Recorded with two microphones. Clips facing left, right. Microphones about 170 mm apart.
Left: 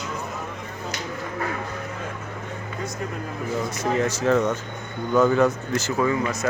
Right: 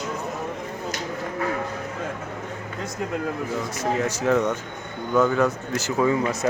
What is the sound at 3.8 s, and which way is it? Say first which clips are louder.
Speech: left 1 dB; 10° right (ahead or behind).